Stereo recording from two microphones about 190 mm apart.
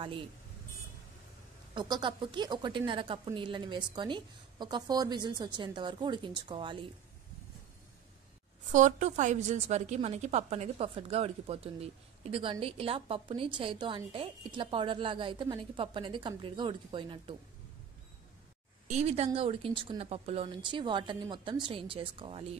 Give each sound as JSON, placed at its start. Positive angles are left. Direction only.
{"t": 1.8, "sound": "a woman's voice", "side_deg": -25}
{"t": 8.7, "sound": "a woman's voice", "side_deg": -40}
{"t": 18.9, "sound": "a woman's voice", "side_deg": -35}